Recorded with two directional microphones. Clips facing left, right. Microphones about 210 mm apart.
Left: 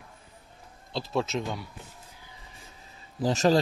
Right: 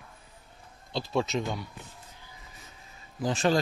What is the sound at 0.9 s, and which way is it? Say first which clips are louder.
Speech: even; centre (ahead or behind).